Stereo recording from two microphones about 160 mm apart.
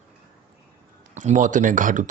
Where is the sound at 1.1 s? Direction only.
50° right (ahead or behind).